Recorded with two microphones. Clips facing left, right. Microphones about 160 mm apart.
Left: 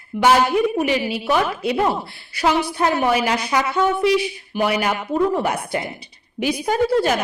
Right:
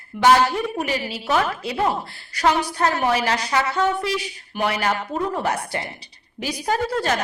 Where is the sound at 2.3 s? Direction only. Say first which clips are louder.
Left 1 dB; 10° left (ahead or behind).